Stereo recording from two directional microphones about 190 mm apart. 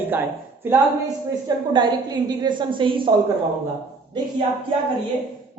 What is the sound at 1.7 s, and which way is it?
A woman's voice, 20° right (ahead or behind).